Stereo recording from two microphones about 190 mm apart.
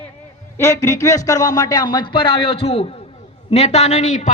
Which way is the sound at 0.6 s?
15° left (ahead or behind).